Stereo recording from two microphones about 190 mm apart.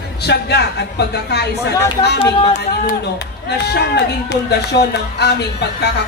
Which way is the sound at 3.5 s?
60° left (ahead or behind).